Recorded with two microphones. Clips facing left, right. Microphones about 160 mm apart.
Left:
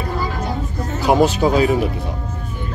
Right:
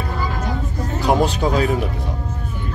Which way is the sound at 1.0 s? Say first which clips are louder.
Left 3 dB; 5° left (ahead or behind).